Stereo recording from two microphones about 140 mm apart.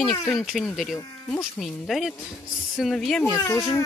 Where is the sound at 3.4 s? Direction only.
20° left (ahead or behind).